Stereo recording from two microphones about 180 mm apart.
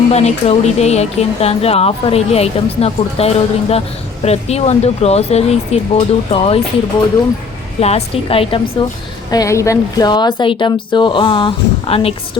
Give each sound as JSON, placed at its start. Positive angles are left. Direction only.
{"t": 0.1, "sound": "speech", "side_deg": 35}
{"t": 7.8, "sound": "speech", "side_deg": 35}
{"t": 9.3, "sound": "a woman's voice", "side_deg": 20}